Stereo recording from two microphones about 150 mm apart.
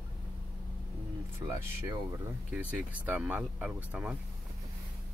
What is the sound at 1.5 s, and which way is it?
Speech, 15° right (ahead or behind).